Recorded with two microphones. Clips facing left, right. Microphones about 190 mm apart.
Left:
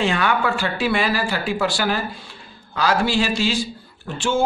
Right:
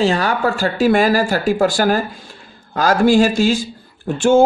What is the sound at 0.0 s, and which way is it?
Speech, 35° right (ahead or behind).